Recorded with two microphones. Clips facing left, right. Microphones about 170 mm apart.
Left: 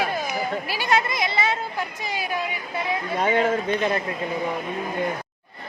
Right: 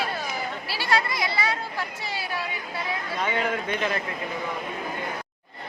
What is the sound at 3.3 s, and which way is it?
Speech, 35° left (ahead or behind).